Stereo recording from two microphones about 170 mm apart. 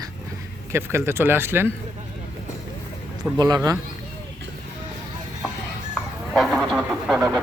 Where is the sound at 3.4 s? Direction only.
20° right (ahead or behind).